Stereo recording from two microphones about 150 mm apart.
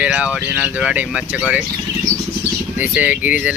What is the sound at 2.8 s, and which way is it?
Speech, 10° right (ahead or behind).